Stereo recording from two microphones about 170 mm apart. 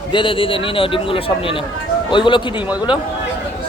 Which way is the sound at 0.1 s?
30° left (ahead or behind).